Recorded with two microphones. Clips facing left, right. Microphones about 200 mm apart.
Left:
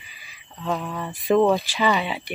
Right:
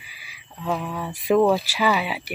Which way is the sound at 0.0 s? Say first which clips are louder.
Right 1 dB; 10° right (ahead or behind).